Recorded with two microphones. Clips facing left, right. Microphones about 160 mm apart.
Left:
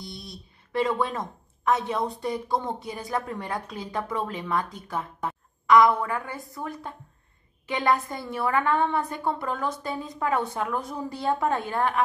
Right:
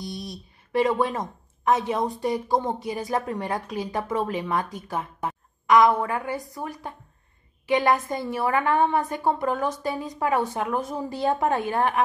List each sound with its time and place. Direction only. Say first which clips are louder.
0.0 s a woman's voice: right 6 dB; 20° right (ahead or behind)
4.9 s a sound: right 1 dB; 20° right (ahead or behind)
6.0 s a woman's voice: right 4 dB; 20° right (ahead or behind)